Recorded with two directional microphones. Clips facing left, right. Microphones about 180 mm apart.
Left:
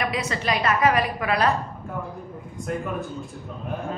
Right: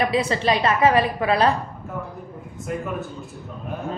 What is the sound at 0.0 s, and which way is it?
A woman's voice, 30° right (ahead or behind).